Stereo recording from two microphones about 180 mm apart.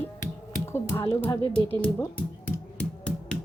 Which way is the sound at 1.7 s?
15° left (ahead or behind).